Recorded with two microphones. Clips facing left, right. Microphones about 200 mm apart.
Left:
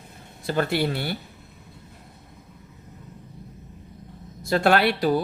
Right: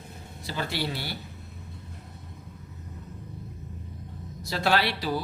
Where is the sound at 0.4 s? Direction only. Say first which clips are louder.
Left 8 dB; 55° left (ahead or behind).